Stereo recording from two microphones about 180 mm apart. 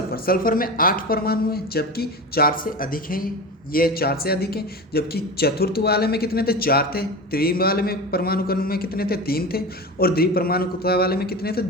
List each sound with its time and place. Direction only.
0.1 s a woman's voice: 55° left (ahead or behind)